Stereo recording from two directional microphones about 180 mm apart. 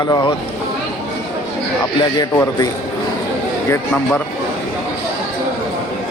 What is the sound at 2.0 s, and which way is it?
Speech, 20° left (ahead or behind).